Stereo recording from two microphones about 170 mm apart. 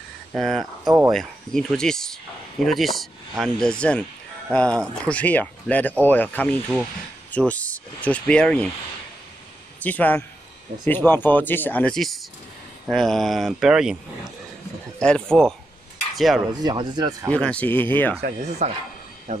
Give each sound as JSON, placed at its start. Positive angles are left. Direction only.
{"t": 0.3, "sound": "speech", "side_deg": 0}
{"t": 9.8, "sound": "speech", "side_deg": 10}
{"t": 15.0, "sound": "speech", "side_deg": 5}
{"t": 16.6, "sound": "speech", "side_deg": -25}
{"t": 17.3, "sound": "speech", "side_deg": 5}
{"t": 18.6, "sound": "speech", "side_deg": -45}